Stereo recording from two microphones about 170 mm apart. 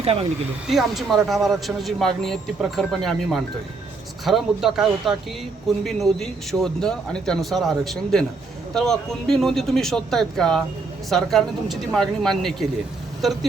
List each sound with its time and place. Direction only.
0.0 s speech: 35° right (ahead or behind)
0.7 s speech: centre (ahead or behind)